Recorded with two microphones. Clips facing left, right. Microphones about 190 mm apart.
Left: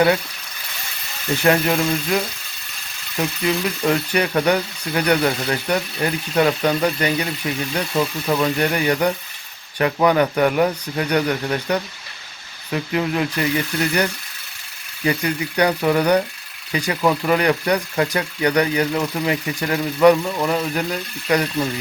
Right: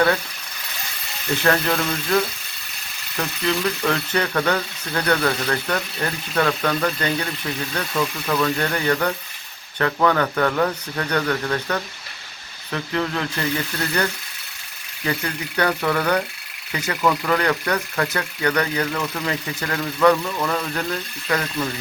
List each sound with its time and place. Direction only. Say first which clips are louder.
1.5 s speech: left 4 dB; 15° left (ahead or behind)
3.2 s speech: left 2 dB; 15° left (ahead or behind)
15.0 s speech: left 5 dB; 15° left (ahead or behind)